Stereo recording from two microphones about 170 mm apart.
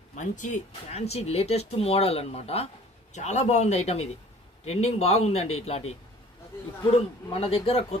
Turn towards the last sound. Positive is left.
turn(degrees=35)  # may be behind; listen again after turning